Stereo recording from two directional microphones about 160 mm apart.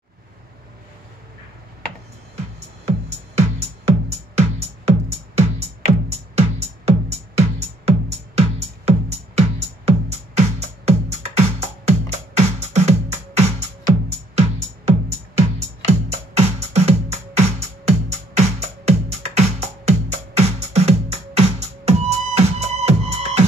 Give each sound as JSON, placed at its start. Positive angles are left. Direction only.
{"t": 2.8, "sound": "music", "side_deg": -40}